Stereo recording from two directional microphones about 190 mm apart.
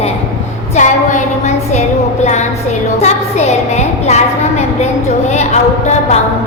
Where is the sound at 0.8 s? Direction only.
40° left (ahead or behind).